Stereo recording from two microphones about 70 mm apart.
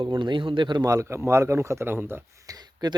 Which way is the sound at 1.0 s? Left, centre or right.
Right.